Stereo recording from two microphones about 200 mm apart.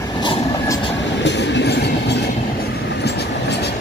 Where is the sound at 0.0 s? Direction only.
20° left (ahead or behind).